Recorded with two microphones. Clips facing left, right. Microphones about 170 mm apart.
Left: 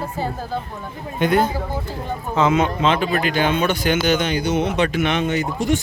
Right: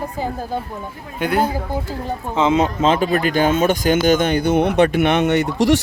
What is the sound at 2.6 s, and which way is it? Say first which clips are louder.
A man's voice: right 2 dB; 40° right (ahead or behind).